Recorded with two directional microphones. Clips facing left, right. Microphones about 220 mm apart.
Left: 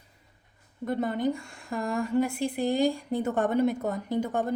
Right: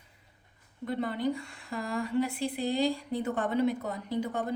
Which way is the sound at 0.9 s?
45° left (ahead or behind).